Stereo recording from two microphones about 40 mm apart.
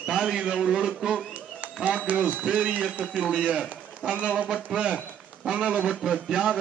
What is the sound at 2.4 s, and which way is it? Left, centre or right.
A man's voice, right.